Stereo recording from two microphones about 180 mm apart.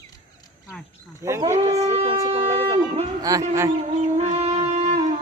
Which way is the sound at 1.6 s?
35° right (ahead or behind).